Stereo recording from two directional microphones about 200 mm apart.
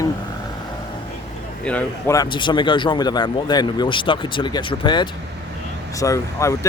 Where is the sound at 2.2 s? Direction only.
25° left (ahead or behind).